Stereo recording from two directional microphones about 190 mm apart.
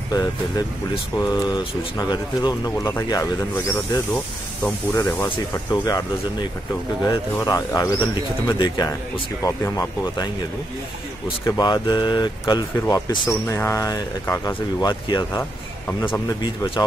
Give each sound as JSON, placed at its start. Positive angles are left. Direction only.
{"t": 0.1, "sound": "speech", "side_deg": 20}
{"t": 4.6, "sound": "speech", "side_deg": 15}
{"t": 7.1, "sound": "speech", "side_deg": 15}
{"t": 11.4, "sound": "speech", "side_deg": 20}